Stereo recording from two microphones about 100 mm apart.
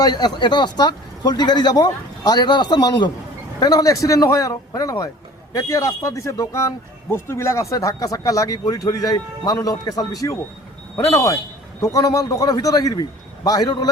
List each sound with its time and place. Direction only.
0.0 s speech: 45° left (ahead or behind)